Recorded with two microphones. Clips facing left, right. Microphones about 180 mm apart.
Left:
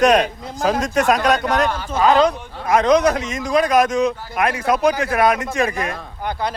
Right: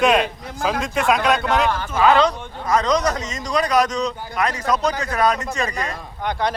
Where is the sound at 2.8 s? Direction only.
55° left (ahead or behind).